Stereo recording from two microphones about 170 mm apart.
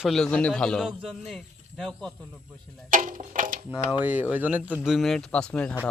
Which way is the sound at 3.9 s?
10° right (ahead or behind).